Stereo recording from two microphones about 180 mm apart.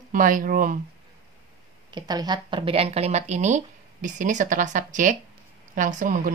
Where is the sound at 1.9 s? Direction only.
25° right (ahead or behind).